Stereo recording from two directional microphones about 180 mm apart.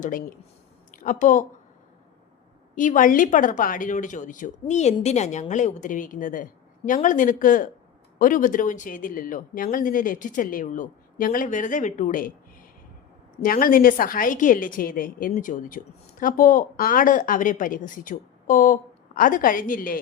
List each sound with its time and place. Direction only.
0.9 s a woman's voice: 45° left (ahead or behind)
2.7 s a woman's voice: 45° left (ahead or behind)